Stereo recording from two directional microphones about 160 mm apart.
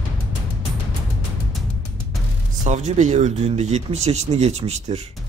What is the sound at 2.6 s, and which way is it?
Speech, 50° right (ahead or behind).